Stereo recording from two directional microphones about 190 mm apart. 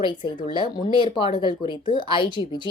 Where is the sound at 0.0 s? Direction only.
25° left (ahead or behind).